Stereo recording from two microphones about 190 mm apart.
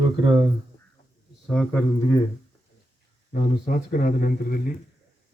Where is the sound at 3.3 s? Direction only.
45° left (ahead or behind).